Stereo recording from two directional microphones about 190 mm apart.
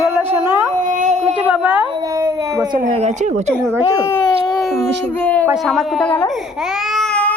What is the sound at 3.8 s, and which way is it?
Speech, 15° left (ahead or behind).